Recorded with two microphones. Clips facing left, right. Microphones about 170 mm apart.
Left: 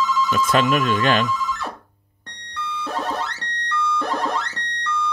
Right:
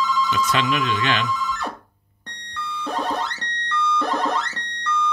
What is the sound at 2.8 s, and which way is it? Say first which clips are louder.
Music: right 1 dB; 5° left (ahead or behind).